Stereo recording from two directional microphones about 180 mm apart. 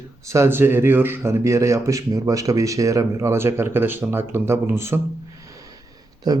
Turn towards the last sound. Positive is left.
turn(degrees=-20)  # may be behind; listen again after turning